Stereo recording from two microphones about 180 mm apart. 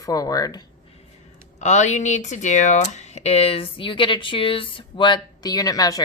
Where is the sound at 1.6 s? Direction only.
40° left (ahead or behind).